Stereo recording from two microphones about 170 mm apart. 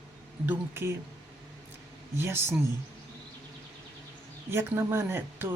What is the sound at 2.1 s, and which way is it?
Speech, 15° right (ahead or behind).